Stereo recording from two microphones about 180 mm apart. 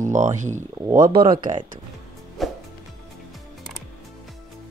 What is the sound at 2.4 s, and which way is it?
Music, centre (ahead or behind).